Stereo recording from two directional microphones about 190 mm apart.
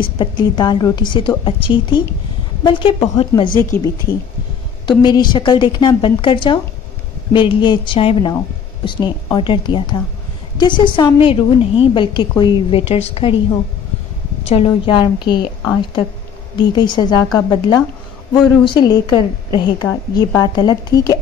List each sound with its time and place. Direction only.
0.0 s a woman's voice: 25° left (ahead or behind)
3.4 s speech: 45° left (ahead or behind)
5.0 s a woman's voice: 25° left (ahead or behind)
16.7 s a woman's voice: 25° left (ahead or behind)